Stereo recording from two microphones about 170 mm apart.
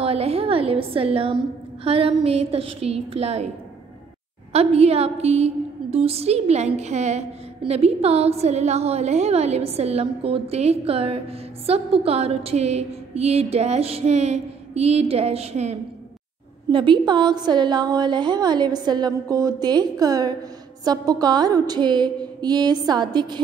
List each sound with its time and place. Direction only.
0.0 s a woman's voice: 35° right (ahead or behind)
4.5 s a woman's voice: 40° right (ahead or behind)
16.7 s a woman's voice: 30° right (ahead or behind)